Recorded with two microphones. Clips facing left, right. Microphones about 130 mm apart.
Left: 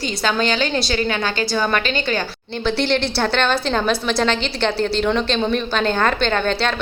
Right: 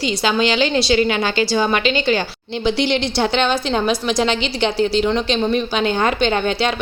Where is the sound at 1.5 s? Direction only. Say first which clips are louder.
Right 1 dB; 15° right (ahead or behind).